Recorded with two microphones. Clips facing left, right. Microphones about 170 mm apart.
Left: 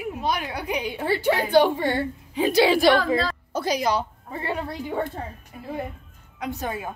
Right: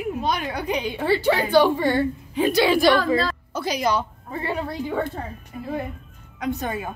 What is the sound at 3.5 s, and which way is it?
Speech, 40° left (ahead or behind).